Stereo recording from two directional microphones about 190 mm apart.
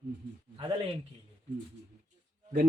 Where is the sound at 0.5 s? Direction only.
25° right (ahead or behind).